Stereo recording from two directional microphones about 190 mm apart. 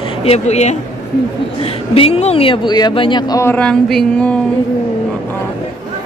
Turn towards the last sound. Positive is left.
turn(degrees=5)  # may be behind; listen again after turning